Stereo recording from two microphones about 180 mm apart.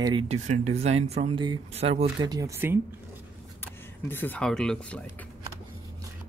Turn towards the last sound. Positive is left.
turn(degrees=5)  # may be behind; listen again after turning